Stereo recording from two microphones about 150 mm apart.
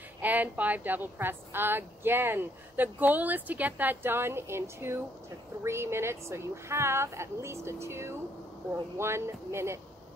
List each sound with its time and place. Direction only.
0.2 s a woman's voice: 10° right (ahead or behind)